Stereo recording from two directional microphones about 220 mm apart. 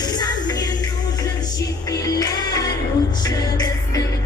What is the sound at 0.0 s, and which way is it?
Music, 20° left (ahead or behind).